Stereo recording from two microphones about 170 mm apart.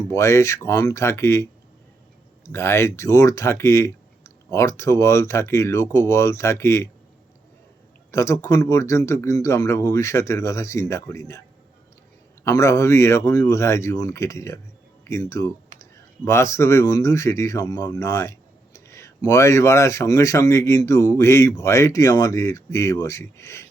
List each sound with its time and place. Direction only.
0.1 s speech: 15° left (ahead or behind)
8.1 s speech: 15° left (ahead or behind)
12.5 s speech: 15° left (ahead or behind)